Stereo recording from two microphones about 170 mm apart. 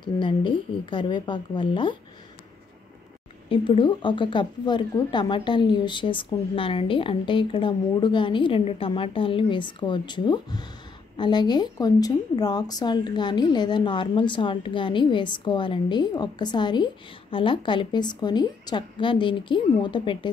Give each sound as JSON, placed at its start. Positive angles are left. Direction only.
{"t": 0.0, "sound": "a woman's voice", "side_deg": 30}
{"t": 3.4, "sound": "a woman's voice", "side_deg": 30}